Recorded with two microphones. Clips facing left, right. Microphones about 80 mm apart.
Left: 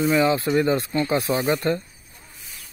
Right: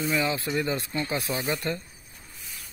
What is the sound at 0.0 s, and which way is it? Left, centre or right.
Speech, left.